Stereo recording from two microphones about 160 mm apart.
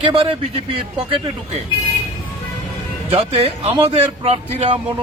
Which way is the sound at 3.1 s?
40° right (ahead or behind).